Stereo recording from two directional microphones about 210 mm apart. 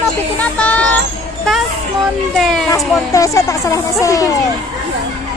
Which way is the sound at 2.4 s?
Centre (ahead or behind).